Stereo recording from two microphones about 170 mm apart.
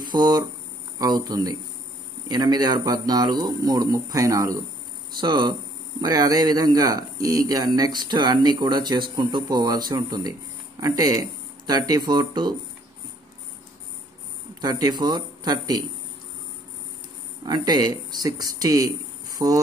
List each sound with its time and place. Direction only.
0.1 s speech: 25° right (ahead or behind)
14.6 s speech: 25° right (ahead or behind)
17.5 s speech: 25° right (ahead or behind)